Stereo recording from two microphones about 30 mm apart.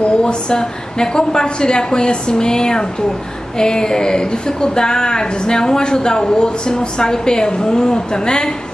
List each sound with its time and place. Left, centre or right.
0.2 s speech: left